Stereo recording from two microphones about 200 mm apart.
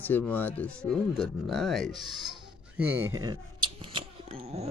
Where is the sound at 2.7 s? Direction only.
10° right (ahead or behind); by 4.7 s 30° right (ahead or behind).